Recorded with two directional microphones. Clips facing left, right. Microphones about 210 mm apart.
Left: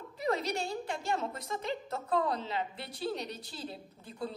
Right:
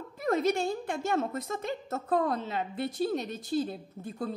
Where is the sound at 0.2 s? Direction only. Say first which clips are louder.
Right 5 dB; 50° right (ahead or behind).